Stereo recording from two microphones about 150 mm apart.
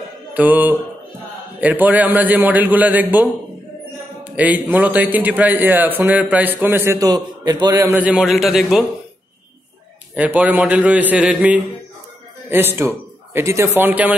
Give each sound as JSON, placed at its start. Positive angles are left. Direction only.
{"t": 0.3, "sound": "music", "side_deg": -10}
{"t": 1.6, "sound": "a man's voice", "side_deg": -10}
{"t": 7.9, "sound": "a man's voice", "side_deg": -5}
{"t": 10.1, "sound": "a man's voice", "side_deg": -10}